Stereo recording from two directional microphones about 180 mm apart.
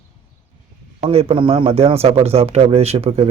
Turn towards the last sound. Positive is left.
turn(degrees=-35)  # may be behind; listen again after turning